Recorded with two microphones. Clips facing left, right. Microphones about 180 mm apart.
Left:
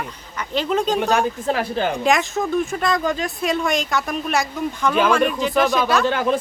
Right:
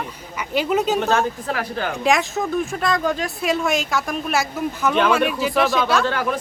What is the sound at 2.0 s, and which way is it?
Speech, centre (ahead or behind).